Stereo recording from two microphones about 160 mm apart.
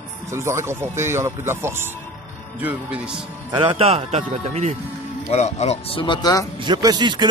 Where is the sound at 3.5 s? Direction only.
35° right (ahead or behind).